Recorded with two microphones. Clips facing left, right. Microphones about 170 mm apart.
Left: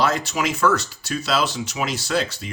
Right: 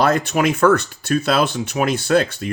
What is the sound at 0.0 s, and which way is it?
Speech, 55° right (ahead or behind).